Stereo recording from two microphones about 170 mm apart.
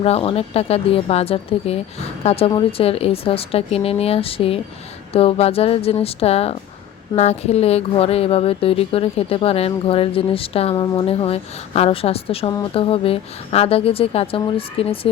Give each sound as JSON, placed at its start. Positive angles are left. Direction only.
{"t": 0.0, "sound": "speech", "side_deg": 35}